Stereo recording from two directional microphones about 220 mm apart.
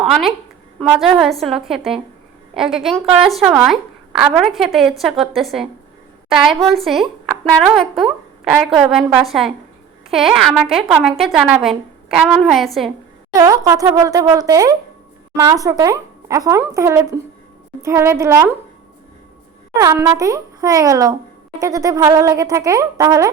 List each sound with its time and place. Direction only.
0.0 s a woman's voice: centre (ahead or behind)
13.3 s speech: 15° right (ahead or behind)
19.7 s speech: 15° right (ahead or behind)